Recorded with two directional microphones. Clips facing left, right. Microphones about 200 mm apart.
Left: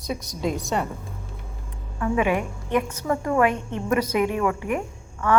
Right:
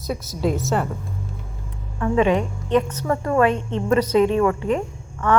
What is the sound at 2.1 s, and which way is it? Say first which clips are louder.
A woman's voice: right 4 dB; 10° left (ahead or behind).